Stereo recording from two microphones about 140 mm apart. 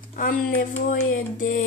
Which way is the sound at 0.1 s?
80° left.